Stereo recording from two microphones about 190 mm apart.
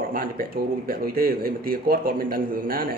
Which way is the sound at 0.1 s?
50° right (ahead or behind).